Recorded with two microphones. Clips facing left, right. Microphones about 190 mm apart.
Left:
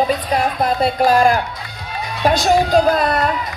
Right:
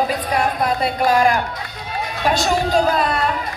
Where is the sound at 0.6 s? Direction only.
25° left (ahead or behind).